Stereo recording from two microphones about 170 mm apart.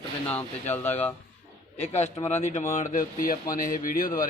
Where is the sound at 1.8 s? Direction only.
40° left (ahead or behind).